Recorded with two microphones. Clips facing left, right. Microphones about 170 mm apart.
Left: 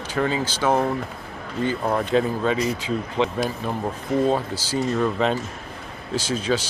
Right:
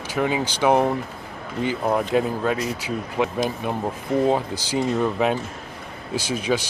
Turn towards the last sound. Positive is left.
turn(degrees=-10)  # may be behind; listen again after turning